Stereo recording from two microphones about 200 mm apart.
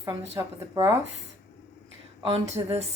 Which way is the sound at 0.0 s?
15° right (ahead or behind).